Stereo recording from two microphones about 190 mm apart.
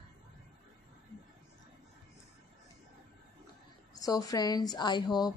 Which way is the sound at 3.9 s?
20° left (ahead or behind).